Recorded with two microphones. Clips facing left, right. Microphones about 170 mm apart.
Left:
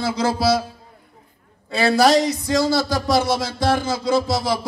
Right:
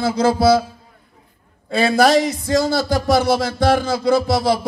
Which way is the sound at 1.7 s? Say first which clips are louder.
Right 1 dB; 50° right (ahead or behind).